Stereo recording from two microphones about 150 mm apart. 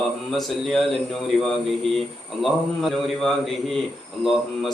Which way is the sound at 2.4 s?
Centre (ahead or behind).